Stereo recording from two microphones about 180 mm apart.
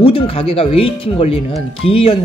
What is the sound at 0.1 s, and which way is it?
Speech, 30° left (ahead or behind).